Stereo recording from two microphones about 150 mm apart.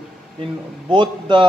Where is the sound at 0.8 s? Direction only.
30° right (ahead or behind).